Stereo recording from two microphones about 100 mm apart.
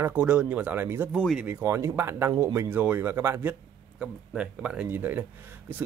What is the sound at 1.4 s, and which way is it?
Speech, 25° right (ahead or behind).